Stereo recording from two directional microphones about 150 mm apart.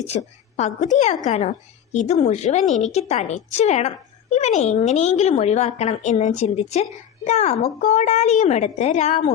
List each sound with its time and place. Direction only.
0.5 s a woman's voice: 50° left (ahead or behind)